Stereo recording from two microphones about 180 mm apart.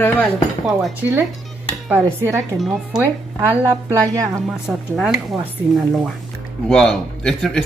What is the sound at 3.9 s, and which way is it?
Speech, 15° right (ahead or behind).